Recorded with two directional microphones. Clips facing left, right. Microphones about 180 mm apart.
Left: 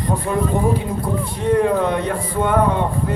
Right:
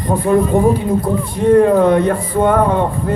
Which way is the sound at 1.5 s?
50° right (ahead or behind).